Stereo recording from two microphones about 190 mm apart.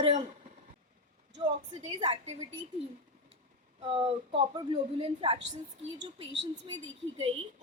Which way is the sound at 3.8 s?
30° right (ahead or behind).